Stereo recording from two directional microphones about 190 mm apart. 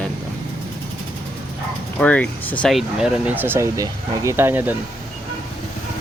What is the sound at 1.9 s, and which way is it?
Speech, 5° left (ahead or behind).